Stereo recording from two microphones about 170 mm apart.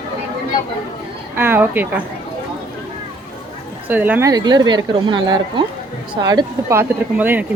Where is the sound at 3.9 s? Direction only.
10° right (ahead or behind).